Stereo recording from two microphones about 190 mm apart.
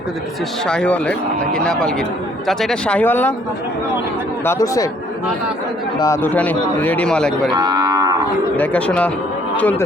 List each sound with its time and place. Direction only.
0.7 s speech: 5° left (ahead or behind)
4.4 s a man's voice: 15° left (ahead or behind)
6.0 s a man's voice: 15° left (ahead or behind)
7.5 s livestock: 20° right (ahead or behind)
8.5 s a man's voice: 10° left (ahead or behind)